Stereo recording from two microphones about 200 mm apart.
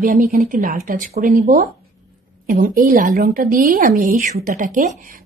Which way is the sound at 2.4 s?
45° right (ahead or behind).